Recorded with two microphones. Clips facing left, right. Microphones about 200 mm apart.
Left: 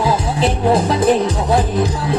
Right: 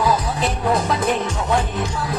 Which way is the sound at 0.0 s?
30° left (ahead or behind).